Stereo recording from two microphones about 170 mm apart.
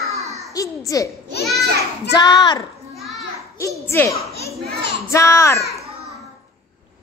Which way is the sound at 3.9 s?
15° left (ahead or behind).